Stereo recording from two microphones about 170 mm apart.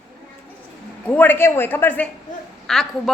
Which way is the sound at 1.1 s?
10° left (ahead or behind).